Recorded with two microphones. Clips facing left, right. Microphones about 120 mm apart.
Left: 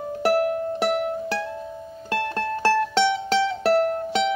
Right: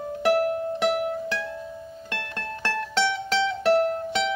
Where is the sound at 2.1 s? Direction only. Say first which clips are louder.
Left 10 dB; 35° left (ahead or behind).